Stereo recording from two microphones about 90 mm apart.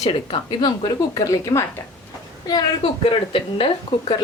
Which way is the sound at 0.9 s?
40° left (ahead or behind).